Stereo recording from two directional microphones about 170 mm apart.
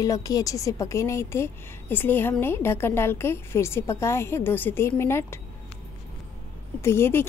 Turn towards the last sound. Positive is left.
turn(degrees=15)  # may be behind; listen again after turning